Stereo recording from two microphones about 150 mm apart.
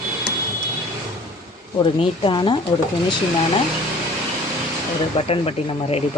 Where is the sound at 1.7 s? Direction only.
35° left (ahead or behind).